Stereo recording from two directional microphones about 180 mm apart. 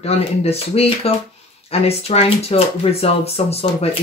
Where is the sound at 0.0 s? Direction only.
35° left (ahead or behind).